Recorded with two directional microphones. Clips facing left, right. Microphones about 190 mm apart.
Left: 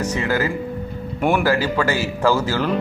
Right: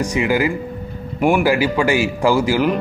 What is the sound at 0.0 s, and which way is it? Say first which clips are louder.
Speech: right 3 dB; 10° right (ahead or behind).